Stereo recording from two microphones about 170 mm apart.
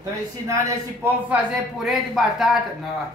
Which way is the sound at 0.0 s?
15° right (ahead or behind).